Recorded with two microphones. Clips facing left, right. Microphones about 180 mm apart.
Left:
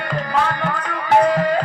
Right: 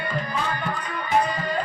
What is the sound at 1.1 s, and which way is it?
Music, 80° left.